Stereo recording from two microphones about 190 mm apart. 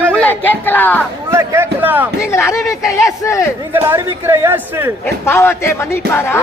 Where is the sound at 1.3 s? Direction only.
15° right (ahead or behind).